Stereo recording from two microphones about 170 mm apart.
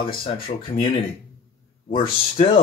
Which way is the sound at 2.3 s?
35° left (ahead or behind).